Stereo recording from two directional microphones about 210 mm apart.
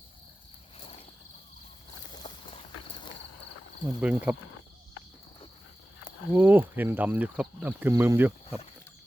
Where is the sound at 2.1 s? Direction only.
20° left (ahead or behind).